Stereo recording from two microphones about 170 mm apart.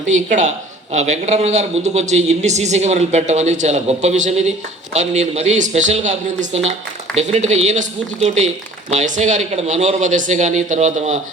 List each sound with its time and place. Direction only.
0.0 s speech: 45° right (ahead or behind)